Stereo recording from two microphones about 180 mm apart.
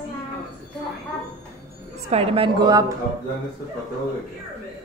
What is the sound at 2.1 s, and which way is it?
Speech, 30° right (ahead or behind).